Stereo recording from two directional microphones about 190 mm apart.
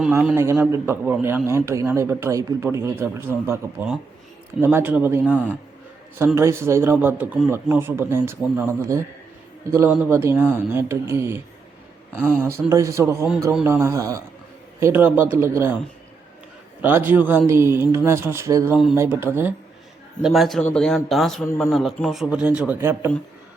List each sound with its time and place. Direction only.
0.1 s a man's voice: 10° right (ahead or behind)
16.8 s a man's voice: 10° right (ahead or behind)
20.2 s a man's voice: centre (ahead or behind)